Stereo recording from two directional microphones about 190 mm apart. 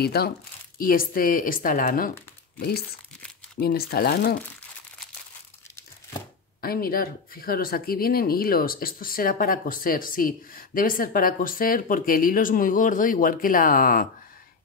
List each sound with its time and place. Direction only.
0.0 s speech: 55° left (ahead or behind)
3.5 s speech: 55° left (ahead or behind)
6.6 s speech: 50° left (ahead or behind)